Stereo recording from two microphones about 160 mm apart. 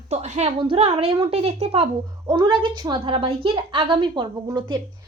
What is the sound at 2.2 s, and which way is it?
A woman's voice, 25° right (ahead or behind).